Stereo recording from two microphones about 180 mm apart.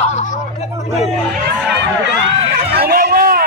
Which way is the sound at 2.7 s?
60° right (ahead or behind).